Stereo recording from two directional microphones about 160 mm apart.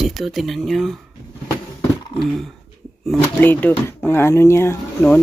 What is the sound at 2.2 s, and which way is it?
Speech, centre (ahead or behind).